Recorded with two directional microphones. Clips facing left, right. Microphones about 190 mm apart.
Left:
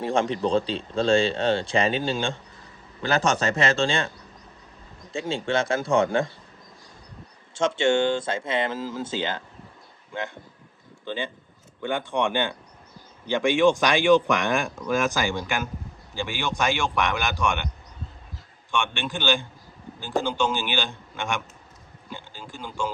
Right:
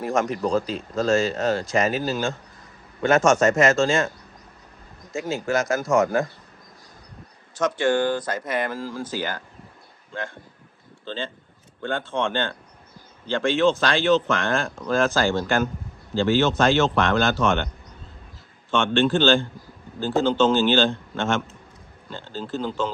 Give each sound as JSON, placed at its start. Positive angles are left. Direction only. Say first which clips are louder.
{"t": 0.0, "sound": "a man's voice", "louder": "even", "side_deg": 30}
{"t": 5.1, "sound": "speech", "louder": "right 1 dB", "side_deg": 30}
{"t": 7.5, "sound": "speech", "louder": "even", "side_deg": 25}
{"t": 18.7, "sound": "speech", "louder": "right 8 dB", "side_deg": 15}